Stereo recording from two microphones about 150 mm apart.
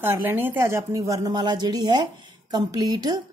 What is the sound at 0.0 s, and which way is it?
A woman's voice, 15° right (ahead or behind).